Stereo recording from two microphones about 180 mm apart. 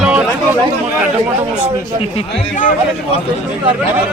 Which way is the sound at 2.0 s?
30° left (ahead or behind).